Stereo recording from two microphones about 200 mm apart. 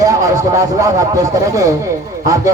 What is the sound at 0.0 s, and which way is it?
A woman's voice, 15° right (ahead or behind).